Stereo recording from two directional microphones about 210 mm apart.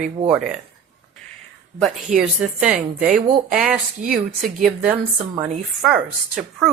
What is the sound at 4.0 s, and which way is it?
Speech, 40° right (ahead or behind).